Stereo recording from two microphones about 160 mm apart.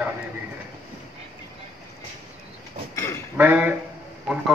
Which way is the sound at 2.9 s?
20° left (ahead or behind).